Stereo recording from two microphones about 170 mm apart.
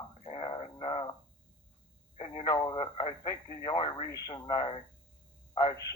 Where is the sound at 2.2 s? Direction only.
30° left (ahead or behind).